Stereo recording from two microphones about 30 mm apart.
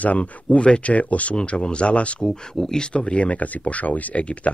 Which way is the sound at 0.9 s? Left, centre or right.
Left.